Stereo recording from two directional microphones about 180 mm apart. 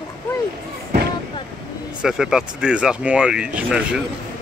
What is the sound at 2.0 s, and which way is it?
Speech, centre (ahead or behind).